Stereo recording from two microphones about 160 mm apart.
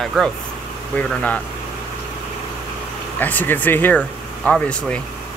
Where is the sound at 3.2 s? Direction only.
10° left (ahead or behind).